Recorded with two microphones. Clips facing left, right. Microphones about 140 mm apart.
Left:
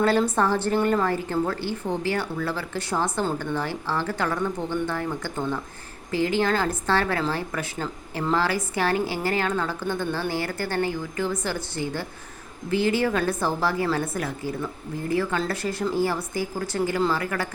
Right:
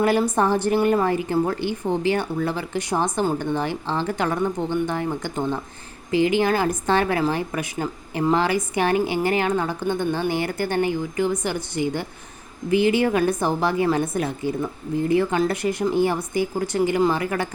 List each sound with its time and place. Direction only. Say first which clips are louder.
0.0 s a woman's voice: right 2 dB; 15° right (ahead or behind)